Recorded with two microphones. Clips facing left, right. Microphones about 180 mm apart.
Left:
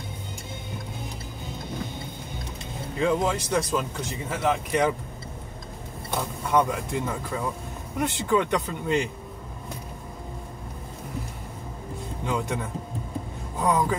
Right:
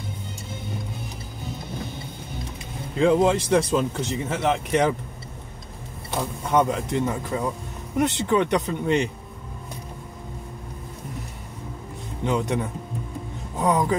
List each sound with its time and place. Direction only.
3.0 s speech: 25° right (ahead or behind)
6.5 s speech: 20° right (ahead or behind)
12.3 s speech: 20° right (ahead or behind)
13.6 s speech: 20° right (ahead or behind)